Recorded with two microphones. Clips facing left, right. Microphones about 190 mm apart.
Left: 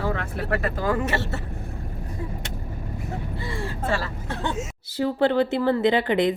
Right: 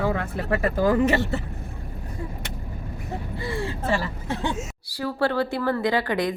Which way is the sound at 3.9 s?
15° right (ahead or behind).